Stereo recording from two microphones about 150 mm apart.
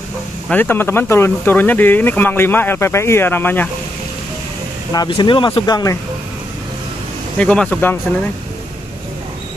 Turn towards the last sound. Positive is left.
turn(degrees=10)  # may be behind; listen again after turning